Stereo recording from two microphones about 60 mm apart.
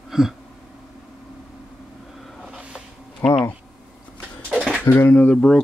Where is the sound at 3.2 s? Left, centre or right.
Left.